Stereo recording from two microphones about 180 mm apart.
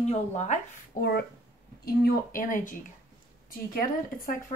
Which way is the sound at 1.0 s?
60° left (ahead or behind).